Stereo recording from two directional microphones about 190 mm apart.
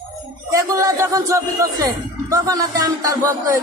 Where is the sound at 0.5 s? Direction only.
15° right (ahead or behind).